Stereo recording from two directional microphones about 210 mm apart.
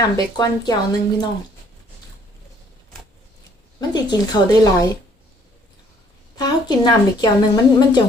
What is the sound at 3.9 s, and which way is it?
Speech, 20° left (ahead or behind).